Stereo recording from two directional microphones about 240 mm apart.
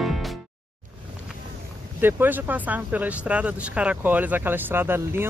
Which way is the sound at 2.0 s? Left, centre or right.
Centre.